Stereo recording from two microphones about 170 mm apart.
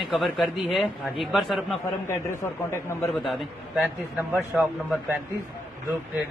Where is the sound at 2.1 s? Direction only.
15° left (ahead or behind).